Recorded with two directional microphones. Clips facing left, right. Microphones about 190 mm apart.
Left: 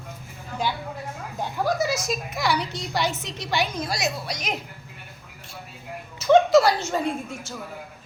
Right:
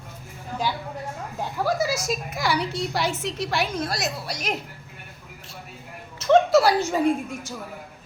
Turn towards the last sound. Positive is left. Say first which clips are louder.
# right 5 dB
turn(degrees=-10)  # may be behind; listen again after turning